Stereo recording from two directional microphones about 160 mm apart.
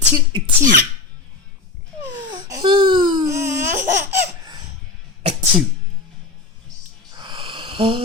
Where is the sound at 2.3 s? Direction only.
20° right (ahead or behind).